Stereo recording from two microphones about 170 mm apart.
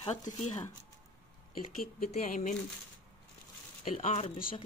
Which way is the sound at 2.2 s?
50° left (ahead or behind).